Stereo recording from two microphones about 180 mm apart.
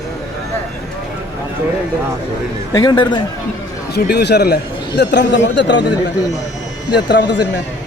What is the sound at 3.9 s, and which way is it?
A man's voice, 65° left (ahead or behind).